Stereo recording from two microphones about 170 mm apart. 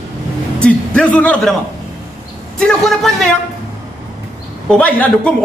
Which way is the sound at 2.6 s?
5° left (ahead or behind).